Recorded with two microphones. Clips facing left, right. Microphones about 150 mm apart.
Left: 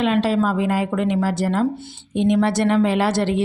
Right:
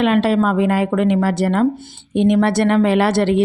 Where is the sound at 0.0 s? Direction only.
60° right (ahead or behind).